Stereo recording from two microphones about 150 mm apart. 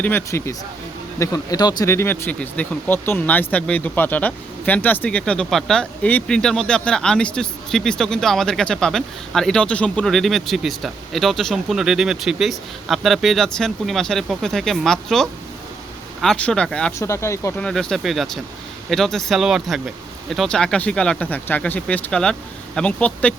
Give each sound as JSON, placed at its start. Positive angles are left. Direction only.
{"t": 0.0, "sound": "speech", "side_deg": 15}
{"t": 17.0, "sound": "speech", "side_deg": 20}
{"t": 17.6, "sound": "speech", "side_deg": 5}